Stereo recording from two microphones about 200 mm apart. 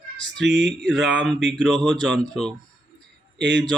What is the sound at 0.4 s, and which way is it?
Speech, 60° right (ahead or behind).